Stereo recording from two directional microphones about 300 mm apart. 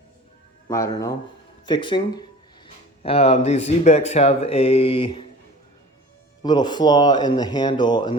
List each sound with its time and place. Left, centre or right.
0.7 s speech: centre
3.0 s speech: centre
6.4 s speech: centre